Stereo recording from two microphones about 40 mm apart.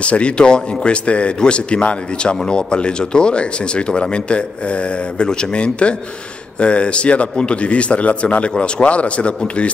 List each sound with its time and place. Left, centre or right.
0.0 s a man's voice: left